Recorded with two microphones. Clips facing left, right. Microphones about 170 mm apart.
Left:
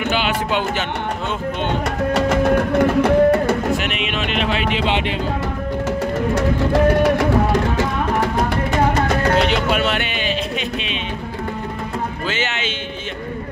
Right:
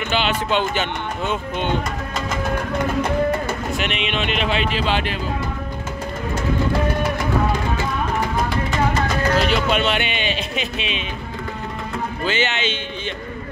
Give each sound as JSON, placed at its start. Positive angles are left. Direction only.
{"t": 0.5, "sound": "speech", "side_deg": 5}
{"t": 2.1, "sound": "music", "side_deg": 70}
{"t": 3.7, "sound": "speech", "side_deg": 5}
{"t": 6.3, "sound": "music", "side_deg": 80}
{"t": 9.7, "sound": "a sound", "side_deg": 5}
{"t": 12.3, "sound": "speech", "side_deg": 5}